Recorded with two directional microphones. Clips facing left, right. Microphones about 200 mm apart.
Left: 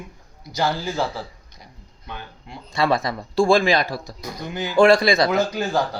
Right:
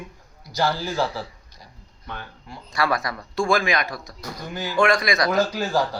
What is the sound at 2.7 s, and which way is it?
Speech, 25° left (ahead or behind).